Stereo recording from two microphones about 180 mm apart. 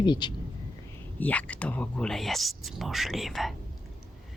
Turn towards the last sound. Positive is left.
turn(degrees=0)  # may be behind; listen again after turning